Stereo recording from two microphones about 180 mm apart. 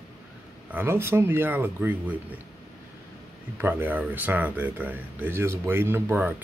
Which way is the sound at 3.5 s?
10° right (ahead or behind).